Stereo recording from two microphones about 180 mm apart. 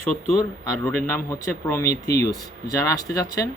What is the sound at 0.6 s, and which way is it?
Speech, 15° left (ahead or behind).